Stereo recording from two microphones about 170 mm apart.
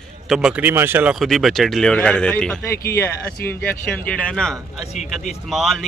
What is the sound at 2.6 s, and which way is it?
Speech, 15° left (ahead or behind).